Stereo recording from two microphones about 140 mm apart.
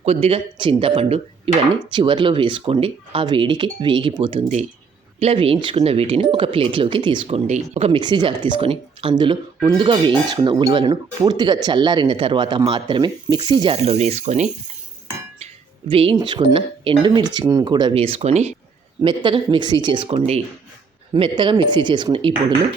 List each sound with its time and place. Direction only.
0.0 s speech: 45° right (ahead or behind)
7.3 s speech: 50° right (ahead or behind); by 13.7 s 35° right (ahead or behind)
13.7 s speech: 50° right (ahead or behind)
15.9 s speech: 40° right (ahead or behind)
19.0 s speech: 35° right (ahead or behind)